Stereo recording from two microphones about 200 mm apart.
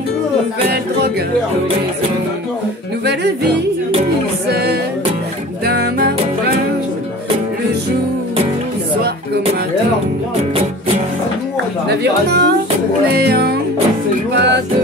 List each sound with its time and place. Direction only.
3.1 s yodeling: 55° right (ahead or behind)
4.5 s music: 55° right (ahead or behind)
11.9 s music: 55° right (ahead or behind)